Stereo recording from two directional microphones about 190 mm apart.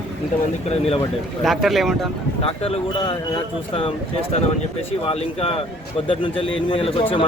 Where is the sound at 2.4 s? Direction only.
30° left (ahead or behind).